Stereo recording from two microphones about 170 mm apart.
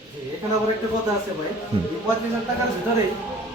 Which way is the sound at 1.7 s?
35° right (ahead or behind).